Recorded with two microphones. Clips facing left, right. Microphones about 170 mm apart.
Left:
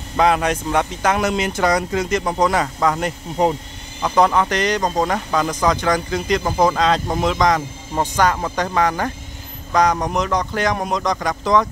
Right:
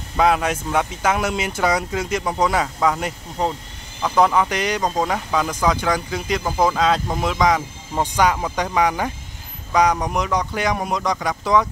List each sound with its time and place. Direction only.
0.2 s a man's voice: 5° right (ahead or behind)